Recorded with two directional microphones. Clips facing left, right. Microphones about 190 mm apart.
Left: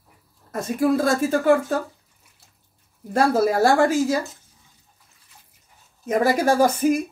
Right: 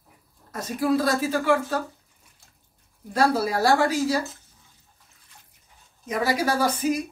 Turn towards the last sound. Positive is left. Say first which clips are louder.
# left 5 dB
turn(degrees=50)  # may be behind; listen again after turning